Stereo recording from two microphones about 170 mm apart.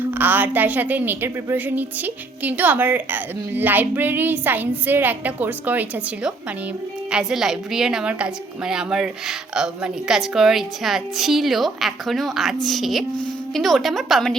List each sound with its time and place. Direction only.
0.0 s a woman's voice: 10° right (ahead or behind)
7.1 s a woman's voice: 5° right (ahead or behind)